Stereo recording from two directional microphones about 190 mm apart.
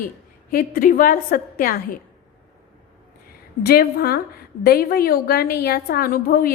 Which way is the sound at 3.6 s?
50° left (ahead or behind).